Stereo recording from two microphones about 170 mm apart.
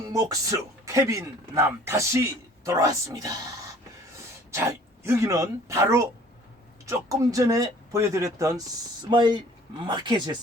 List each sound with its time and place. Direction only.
0.1 s a man's voice: 20° right (ahead or behind)